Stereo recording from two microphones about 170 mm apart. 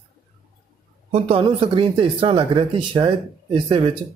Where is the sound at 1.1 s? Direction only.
35° right (ahead or behind).